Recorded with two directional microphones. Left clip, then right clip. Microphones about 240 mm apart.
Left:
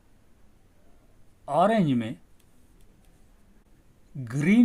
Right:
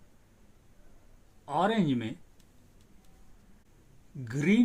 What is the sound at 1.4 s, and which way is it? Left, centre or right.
Speech, left.